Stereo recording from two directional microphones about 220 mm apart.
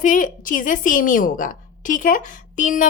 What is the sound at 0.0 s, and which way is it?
A woman's voice, 35° left (ahead or behind).